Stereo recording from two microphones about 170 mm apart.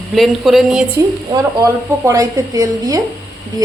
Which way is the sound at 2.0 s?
20° right (ahead or behind).